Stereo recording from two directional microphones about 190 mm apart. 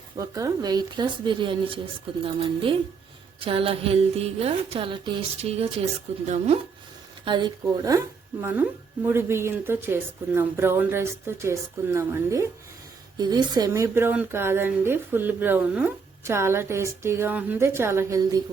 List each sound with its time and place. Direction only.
0.2 s a woman's voice: 20° right (ahead or behind)
3.4 s music: 30° right (ahead or behind)
7.3 s speech: 25° right (ahead or behind)